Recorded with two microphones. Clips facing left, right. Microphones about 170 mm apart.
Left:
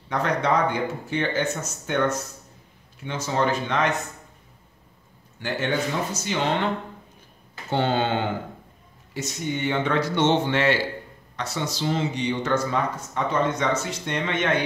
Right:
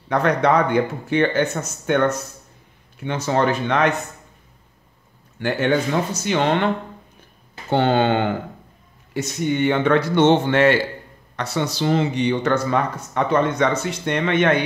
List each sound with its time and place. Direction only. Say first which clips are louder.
0.1 s speech: right 5 dB; 60° right (ahead or behind)
5.4 s speech: right 6 dB; 60° right (ahead or behind)
7.7 s speech: right 5 dB; 65° right (ahead or behind)